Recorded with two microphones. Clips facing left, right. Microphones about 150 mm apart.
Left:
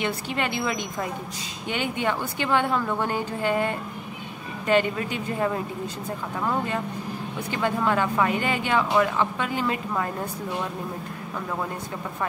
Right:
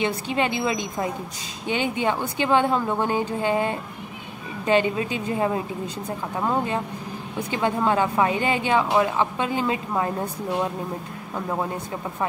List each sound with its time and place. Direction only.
0.0 s a woman's voice: 20° right (ahead or behind)
7.5 s a woman's voice: 20° right (ahead or behind)